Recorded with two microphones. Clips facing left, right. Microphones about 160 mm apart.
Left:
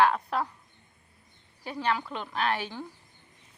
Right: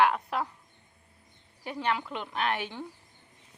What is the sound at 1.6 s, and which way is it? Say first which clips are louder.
A woman's voice: left 1 dB; 20° right (ahead or behind).